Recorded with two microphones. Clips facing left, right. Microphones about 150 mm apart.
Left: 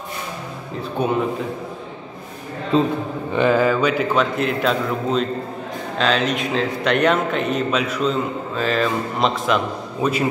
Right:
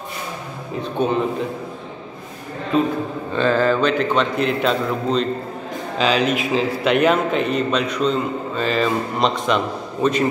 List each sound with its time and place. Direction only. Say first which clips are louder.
1.0 s a man's voice: right 1 dB; 10° left (ahead or behind)
2.7 s a man's voice: left 1 dB; 30° left (ahead or behind)
3.3 s a man's voice: left 1 dB; 10° left (ahead or behind)